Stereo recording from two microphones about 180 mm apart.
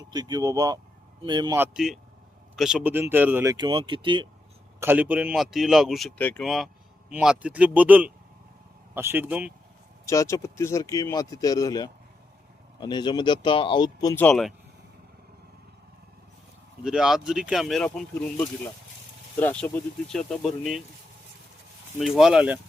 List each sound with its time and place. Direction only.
0.1 s speech: 20° right (ahead or behind)
1.5 s speech: 5° right (ahead or behind); by 4.3 s 25° right (ahead or behind)
4.8 s speech: 10° right (ahead or behind)
10.1 s speech: 15° left (ahead or behind)
14.3 s speech: centre (ahead or behind)
16.8 s speech: 5° right (ahead or behind)
21.9 s speech: centre (ahead or behind)